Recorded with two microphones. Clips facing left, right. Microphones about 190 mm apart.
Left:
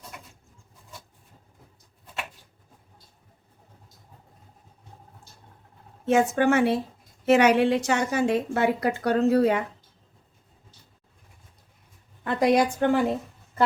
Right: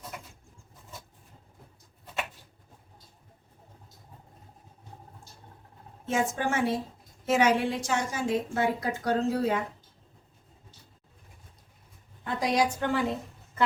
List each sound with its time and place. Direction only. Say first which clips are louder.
6.1 s a woman's voice: left 8 dB; 65° left (ahead or behind)
12.2 s a woman's voice: left 6 dB; 65° left (ahead or behind)